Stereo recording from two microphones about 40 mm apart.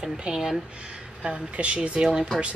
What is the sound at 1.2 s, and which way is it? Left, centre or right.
Speech, right.